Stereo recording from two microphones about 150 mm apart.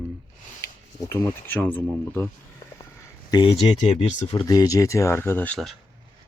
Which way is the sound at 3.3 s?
35° left (ahead or behind).